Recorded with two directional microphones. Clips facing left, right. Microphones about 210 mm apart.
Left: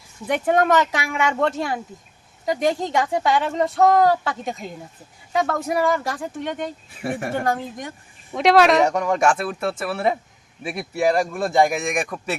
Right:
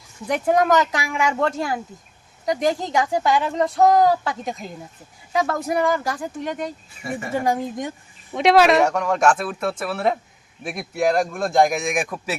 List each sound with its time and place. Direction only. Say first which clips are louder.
0.3 s a woman's voice: even; centre (ahead or behind)
7.0 s speech: left 3 dB; 60° left (ahead or behind)
7.3 s a woman's voice: right 2 dB; 10° right (ahead or behind)
9.0 s a woman's voice: even; 10° left (ahead or behind)